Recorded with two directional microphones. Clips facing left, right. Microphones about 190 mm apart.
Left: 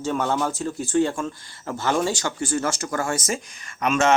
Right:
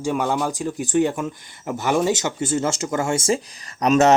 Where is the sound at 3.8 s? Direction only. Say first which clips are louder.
Right 4 dB; 40° right (ahead or behind).